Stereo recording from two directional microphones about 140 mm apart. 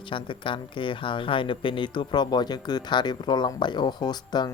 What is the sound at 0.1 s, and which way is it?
Speech, 35° left (ahead or behind).